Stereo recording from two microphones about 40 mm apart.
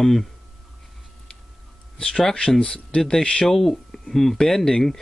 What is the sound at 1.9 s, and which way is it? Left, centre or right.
Speech, centre.